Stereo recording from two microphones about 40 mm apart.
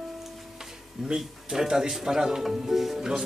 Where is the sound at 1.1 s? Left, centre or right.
Centre.